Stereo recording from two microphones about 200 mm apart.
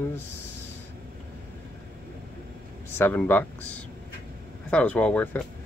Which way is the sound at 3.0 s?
10° left (ahead or behind).